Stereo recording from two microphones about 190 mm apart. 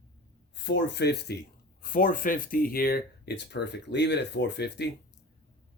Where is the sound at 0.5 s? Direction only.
65° left (ahead or behind).